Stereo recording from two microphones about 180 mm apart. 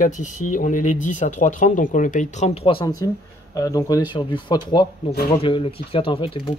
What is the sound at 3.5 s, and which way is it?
Speech, 20° left (ahead or behind).